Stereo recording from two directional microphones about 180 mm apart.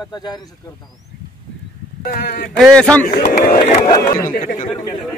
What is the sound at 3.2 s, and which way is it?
Speech, 50° left (ahead or behind).